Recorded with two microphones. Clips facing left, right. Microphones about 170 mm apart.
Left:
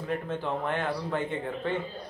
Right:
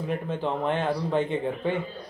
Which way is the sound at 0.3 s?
20° right (ahead or behind).